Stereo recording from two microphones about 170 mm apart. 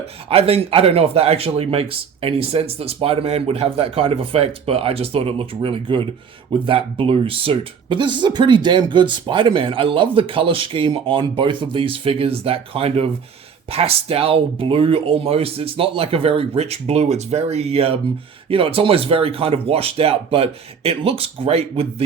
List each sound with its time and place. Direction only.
0.3 s speech: 35° right (ahead or behind)